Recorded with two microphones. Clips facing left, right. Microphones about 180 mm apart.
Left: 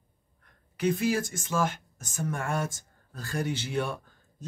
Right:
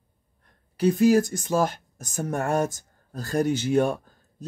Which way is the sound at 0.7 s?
40° right (ahead or behind).